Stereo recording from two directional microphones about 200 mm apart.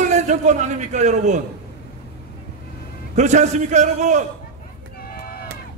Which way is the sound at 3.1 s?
35° right (ahead or behind).